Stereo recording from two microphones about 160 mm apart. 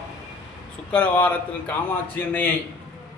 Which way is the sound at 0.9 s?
10° left (ahead or behind).